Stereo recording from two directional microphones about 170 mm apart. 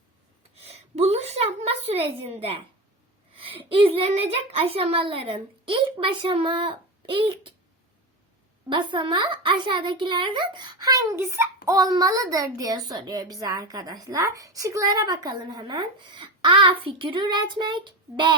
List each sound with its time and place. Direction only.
0.5 s a sound: 35° right (ahead or behind)
1.6 s a woman's voice: 35° right (ahead or behind)
8.7 s speech: 30° right (ahead or behind)